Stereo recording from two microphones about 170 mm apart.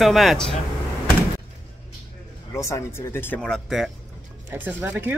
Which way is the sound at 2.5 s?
15° left (ahead or behind).